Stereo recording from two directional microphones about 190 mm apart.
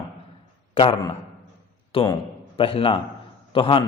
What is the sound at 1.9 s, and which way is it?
A man's voice, 30° left (ahead or behind).